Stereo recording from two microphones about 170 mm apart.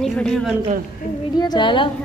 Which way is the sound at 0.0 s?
5° left (ahead or behind).